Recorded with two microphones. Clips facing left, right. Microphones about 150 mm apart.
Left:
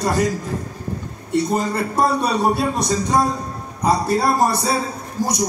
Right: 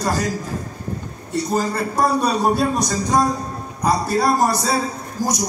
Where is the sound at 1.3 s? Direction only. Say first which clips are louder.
Left 2 dB; 25° left (ahead or behind).